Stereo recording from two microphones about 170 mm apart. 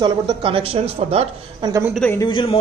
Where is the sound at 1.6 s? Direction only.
20° right (ahead or behind).